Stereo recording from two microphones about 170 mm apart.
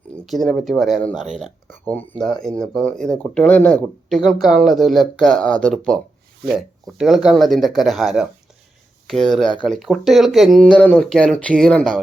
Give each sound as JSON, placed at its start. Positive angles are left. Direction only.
{"t": 0.3, "sound": "speech", "side_deg": 0}
{"t": 1.7, "sound": "speech", "side_deg": 10}